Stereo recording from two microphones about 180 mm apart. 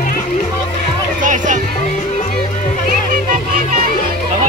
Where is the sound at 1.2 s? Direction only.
45° right (ahead or behind).